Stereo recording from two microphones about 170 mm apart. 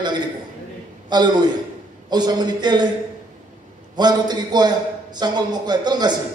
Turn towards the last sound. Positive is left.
turn(degrees=-25)  # may be behind; listen again after turning